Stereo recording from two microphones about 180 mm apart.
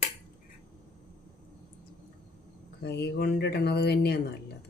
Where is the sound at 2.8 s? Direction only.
65° left (ahead or behind).